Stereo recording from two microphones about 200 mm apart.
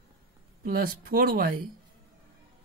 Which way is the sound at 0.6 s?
45° right (ahead or behind).